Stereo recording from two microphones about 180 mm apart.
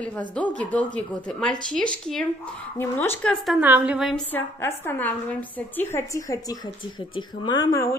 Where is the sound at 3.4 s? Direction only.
5° right (ahead or behind).